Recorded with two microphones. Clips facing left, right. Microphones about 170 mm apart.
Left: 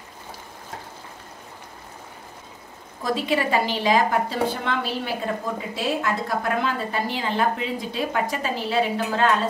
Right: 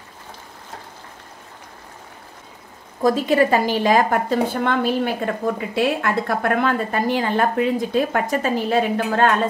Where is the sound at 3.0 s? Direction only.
45° right (ahead or behind).